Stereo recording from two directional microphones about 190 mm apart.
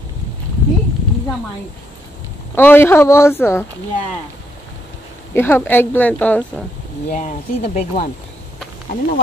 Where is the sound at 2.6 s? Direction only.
10° left (ahead or behind).